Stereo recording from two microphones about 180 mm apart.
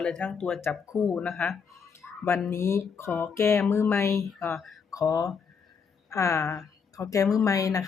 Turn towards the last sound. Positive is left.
turn(degrees=20)  # may be behind; listen again after turning